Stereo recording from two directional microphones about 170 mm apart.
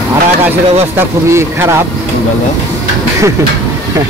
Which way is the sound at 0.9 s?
15° right (ahead or behind).